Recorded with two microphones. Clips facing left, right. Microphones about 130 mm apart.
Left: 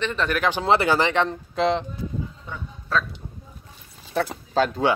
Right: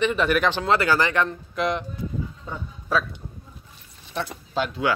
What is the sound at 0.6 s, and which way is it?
Speech, 20° left (ahead or behind).